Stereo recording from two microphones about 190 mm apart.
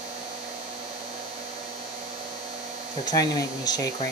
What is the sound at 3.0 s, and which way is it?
Speech, 20° left (ahead or behind).